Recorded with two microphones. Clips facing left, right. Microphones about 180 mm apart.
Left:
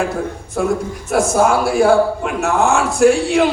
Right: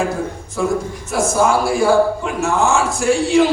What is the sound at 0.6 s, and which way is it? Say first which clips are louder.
A man's voice: left 1 dB; 55° left (ahead or behind).